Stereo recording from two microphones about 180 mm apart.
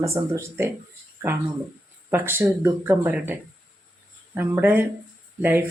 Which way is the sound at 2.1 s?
10° right (ahead or behind).